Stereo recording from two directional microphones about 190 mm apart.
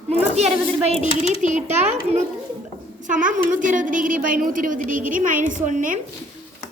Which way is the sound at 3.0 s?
45° right (ahead or behind).